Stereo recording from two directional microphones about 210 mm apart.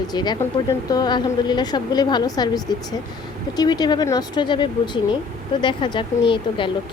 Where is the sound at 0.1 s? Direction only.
20° left (ahead or behind).